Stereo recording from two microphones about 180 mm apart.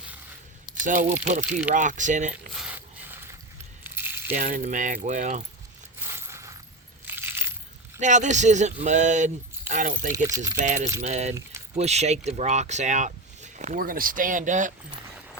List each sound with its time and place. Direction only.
0.9 s speech: 45° right (ahead or behind)
2.5 s mechanisms: 5° right (ahead or behind)
3.8 s coin: 10° right (ahead or behind)
4.4 s speech: 45° right (ahead or behind)
6.1 s coin: 15° right (ahead or behind)
7.9 s speech: 40° right (ahead or behind)
10.2 s speech: 20° right (ahead or behind)
11.0 s speech: 40° right (ahead or behind)